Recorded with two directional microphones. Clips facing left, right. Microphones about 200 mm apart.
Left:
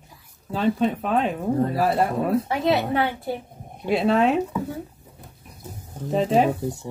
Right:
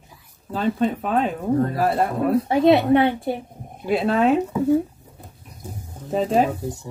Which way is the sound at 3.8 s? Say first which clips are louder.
Right 1 dB; centre (ahead or behind).